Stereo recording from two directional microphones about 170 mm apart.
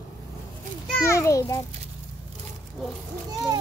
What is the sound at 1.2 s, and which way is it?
Speech, 20° left (ahead or behind).